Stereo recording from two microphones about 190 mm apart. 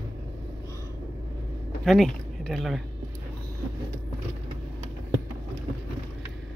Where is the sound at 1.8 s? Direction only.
Centre (ahead or behind).